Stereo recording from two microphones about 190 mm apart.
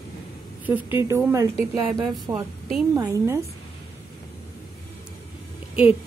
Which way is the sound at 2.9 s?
15° right (ahead or behind).